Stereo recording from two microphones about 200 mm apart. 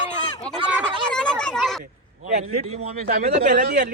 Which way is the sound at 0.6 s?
5° right (ahead or behind).